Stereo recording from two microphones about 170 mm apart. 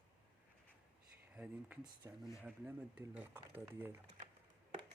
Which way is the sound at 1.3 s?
10° right (ahead or behind).